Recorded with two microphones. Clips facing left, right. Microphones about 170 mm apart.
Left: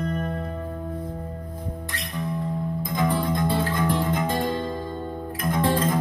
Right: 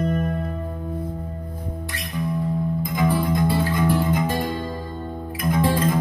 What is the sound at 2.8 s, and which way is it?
Music, 10° right (ahead or behind).